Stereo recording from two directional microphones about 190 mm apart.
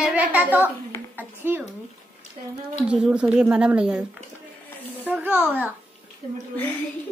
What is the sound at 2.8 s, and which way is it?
Speech, 5° right (ahead or behind).